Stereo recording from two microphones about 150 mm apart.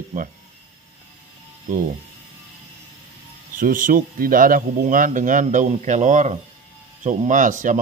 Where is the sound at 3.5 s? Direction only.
65° right (ahead or behind).